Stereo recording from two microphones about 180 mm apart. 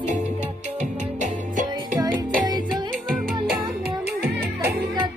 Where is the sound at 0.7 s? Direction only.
40° right (ahead or behind).